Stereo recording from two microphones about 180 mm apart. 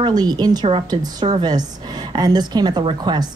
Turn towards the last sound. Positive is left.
turn(degrees=-25)  # may be behind; listen again after turning